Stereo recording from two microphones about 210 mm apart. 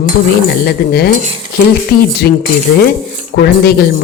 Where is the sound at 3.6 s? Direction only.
50° left (ahead or behind).